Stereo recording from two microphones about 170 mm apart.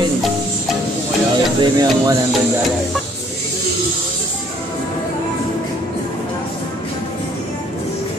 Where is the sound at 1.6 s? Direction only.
25° right (ahead or behind).